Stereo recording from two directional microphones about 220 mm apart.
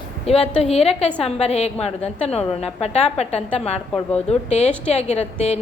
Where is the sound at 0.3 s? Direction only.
30° left (ahead or behind).